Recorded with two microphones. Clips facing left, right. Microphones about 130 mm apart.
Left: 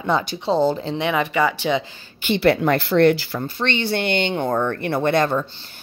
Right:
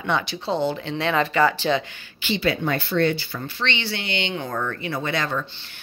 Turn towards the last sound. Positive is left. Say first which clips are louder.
# left 7 dB
turn(degrees=55)  # may be behind; listen again after turning